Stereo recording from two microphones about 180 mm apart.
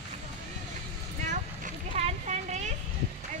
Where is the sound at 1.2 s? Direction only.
40° right (ahead or behind).